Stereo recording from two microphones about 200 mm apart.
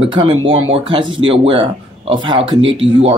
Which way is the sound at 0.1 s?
25° right (ahead or behind).